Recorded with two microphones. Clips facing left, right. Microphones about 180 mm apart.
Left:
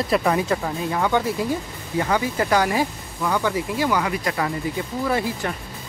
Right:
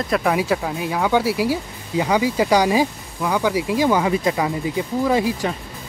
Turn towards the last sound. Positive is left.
turn(degrees=-15)  # may be behind; listen again after turning